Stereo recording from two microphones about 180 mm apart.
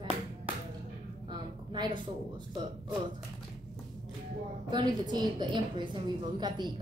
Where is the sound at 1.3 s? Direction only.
25° right (ahead or behind).